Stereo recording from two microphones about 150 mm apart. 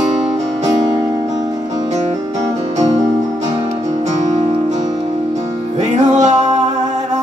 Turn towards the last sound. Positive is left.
turn(degrees=-50)  # may be behind; listen again after turning